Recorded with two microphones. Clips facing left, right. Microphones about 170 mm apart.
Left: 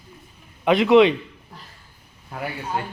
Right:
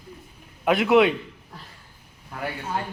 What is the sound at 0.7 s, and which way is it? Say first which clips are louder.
Speech: left 3 dB; 5° right (ahead or behind).